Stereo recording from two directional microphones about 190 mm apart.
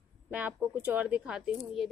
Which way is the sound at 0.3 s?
10° right (ahead or behind).